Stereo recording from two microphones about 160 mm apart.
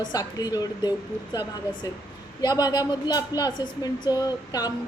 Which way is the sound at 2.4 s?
25° left (ahead or behind).